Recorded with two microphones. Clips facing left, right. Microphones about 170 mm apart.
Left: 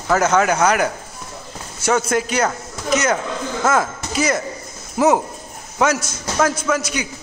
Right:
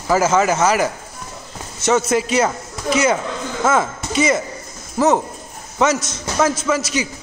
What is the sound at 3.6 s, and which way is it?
Speech, 5° right (ahead or behind).